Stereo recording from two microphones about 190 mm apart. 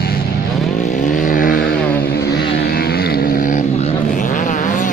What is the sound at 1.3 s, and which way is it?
Vehicle, 45° left (ahead or behind).